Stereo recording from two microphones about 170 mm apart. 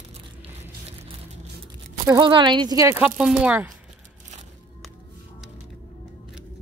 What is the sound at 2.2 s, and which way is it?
Speech, 25° right (ahead or behind).